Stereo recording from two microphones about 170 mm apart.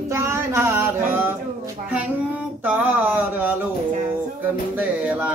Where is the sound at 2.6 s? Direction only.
10° right (ahead or behind).